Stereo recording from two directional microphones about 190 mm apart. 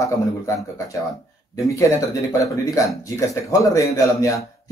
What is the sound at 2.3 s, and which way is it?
A man's voice, 15° left (ahead or behind).